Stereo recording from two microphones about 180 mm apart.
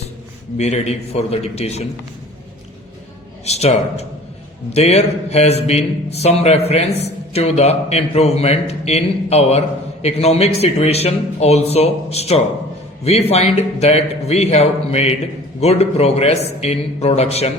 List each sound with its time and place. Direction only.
0.5 s a man's voice: 40° left (ahead or behind)
3.4 s a man's voice: 35° left (ahead or behind)